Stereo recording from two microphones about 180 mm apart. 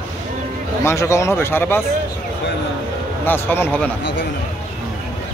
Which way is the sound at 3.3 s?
10° left (ahead or behind).